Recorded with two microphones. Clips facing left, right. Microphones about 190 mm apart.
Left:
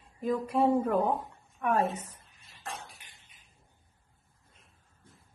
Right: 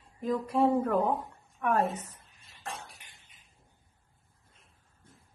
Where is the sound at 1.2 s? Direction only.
10° left (ahead or behind).